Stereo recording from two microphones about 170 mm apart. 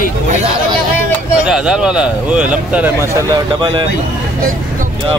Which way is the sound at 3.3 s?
25° right (ahead or behind).